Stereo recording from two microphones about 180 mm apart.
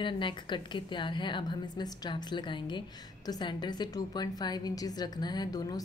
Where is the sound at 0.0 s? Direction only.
25° left (ahead or behind).